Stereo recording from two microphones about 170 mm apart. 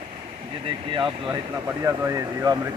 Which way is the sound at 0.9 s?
25° right (ahead or behind).